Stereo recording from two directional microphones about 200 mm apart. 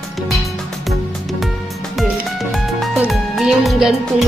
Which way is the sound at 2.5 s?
Centre (ahead or behind).